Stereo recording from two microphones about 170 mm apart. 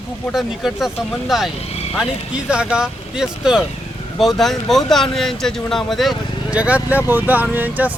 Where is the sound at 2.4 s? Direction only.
5° right (ahead or behind).